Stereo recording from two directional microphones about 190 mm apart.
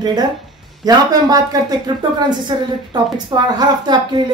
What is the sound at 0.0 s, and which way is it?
A woman's voice, 20° right (ahead or behind).